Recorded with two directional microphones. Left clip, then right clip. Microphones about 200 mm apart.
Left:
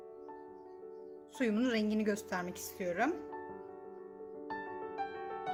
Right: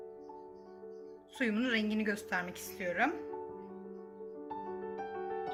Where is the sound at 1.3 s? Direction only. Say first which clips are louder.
Even; 45° left (ahead or behind).